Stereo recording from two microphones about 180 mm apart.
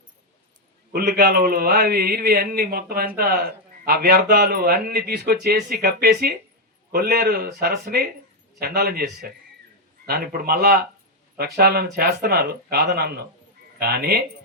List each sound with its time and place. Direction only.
0.9 s a man's voice: 60° right (ahead or behind)